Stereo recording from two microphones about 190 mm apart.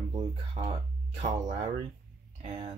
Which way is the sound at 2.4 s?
30° right (ahead or behind).